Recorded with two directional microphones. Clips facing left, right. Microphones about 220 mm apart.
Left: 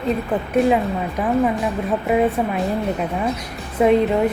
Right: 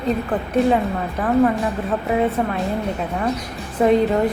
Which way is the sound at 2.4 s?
5° left (ahead or behind).